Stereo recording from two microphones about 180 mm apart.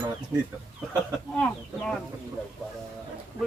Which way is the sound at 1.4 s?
5° left (ahead or behind).